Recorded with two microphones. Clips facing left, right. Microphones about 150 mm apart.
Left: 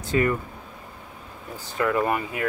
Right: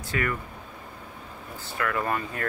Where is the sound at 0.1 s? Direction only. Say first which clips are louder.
Left 7 dB; 25° left (ahead or behind).